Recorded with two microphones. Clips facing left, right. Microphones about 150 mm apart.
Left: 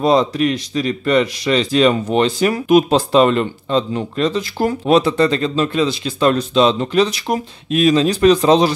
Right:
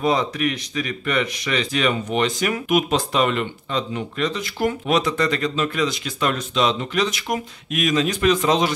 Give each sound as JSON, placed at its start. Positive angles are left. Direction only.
{"t": 0.0, "sound": "speech", "side_deg": 35}